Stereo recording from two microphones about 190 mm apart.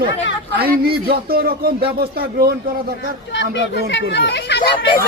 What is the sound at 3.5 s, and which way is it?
Speech, 65° left (ahead or behind).